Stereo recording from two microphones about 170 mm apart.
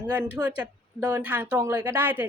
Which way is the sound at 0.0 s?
10° right (ahead or behind).